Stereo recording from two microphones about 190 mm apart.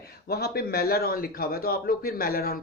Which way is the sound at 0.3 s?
55° left (ahead or behind).